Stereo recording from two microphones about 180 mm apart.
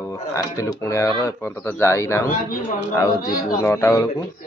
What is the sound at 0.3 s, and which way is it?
A man's voice, 15° left (ahead or behind).